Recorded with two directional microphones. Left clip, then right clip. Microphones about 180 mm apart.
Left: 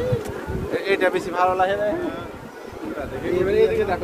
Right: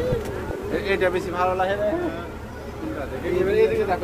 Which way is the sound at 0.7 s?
70° left (ahead or behind).